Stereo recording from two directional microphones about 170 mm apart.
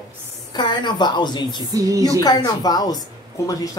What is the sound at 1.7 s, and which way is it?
Speech, 20° right (ahead or behind).